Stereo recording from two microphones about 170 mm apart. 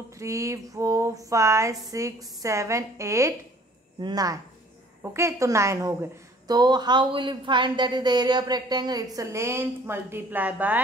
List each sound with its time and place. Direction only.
0.2 s a woman's voice: 15° right (ahead or behind)